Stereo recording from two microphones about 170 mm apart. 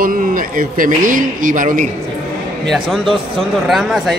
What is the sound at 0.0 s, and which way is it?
A man's voice, 55° right (ahead or behind).